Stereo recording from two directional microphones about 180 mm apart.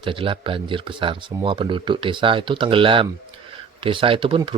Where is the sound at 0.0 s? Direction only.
30° right (ahead or behind).